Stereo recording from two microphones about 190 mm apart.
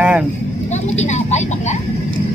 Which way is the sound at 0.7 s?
35° left (ahead or behind).